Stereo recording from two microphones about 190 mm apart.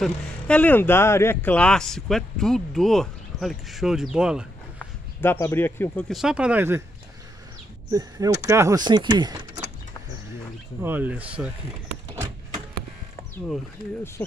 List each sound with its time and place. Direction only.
0.0 s speech: 5° left (ahead or behind)
4.7 s speech: 10° left (ahead or behind); by 6.8 s 10° right (ahead or behind)
7.9 s speech: 20° right (ahead or behind)
10.8 s speech: 10° right (ahead or behind)